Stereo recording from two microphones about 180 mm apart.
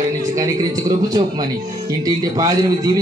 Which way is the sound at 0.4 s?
20° right (ahead or behind).